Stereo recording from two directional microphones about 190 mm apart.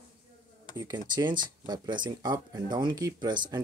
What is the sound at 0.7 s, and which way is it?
Speech, 20° right (ahead or behind).